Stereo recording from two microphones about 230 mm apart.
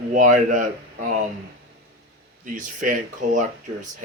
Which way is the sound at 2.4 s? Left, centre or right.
Right.